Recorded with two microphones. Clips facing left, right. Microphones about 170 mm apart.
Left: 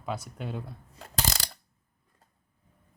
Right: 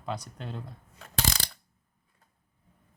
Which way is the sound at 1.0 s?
40° left (ahead or behind).